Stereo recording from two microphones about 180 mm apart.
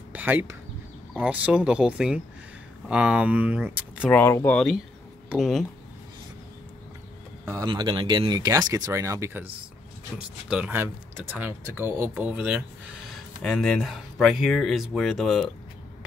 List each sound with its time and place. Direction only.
0.1 s speech: 10° right (ahead or behind)
4.1 s speech: 15° left (ahead or behind)
5.3 s speech: centre (ahead or behind)
7.4 s speech: 20° right (ahead or behind); by 15.5 s centre (ahead or behind)